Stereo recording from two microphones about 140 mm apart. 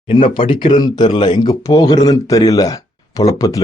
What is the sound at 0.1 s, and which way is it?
Speech, 35° left (ahead or behind).